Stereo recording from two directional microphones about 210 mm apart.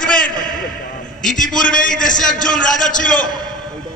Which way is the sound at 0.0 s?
40° left (ahead or behind).